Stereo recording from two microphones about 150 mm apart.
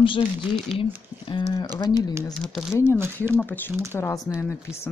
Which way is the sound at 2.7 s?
15° left (ahead or behind).